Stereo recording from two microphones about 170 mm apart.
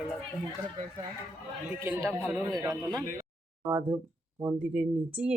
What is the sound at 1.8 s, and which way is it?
Speech, 15° right (ahead or behind).